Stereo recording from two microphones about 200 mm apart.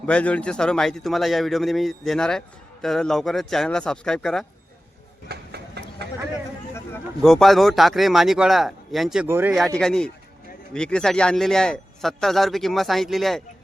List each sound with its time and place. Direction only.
0.0 s speech: 5° left (ahead or behind)
5.3 s a sound: 55° right (ahead or behind)
7.2 s speech: centre (ahead or behind)